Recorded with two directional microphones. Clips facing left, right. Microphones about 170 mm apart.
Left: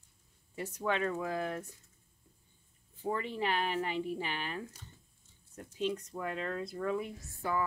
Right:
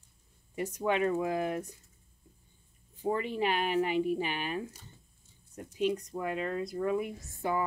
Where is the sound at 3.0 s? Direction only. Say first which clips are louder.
Right 4 dB; 15° right (ahead or behind).